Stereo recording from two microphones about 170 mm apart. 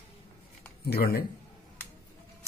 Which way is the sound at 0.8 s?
65° left (ahead or behind).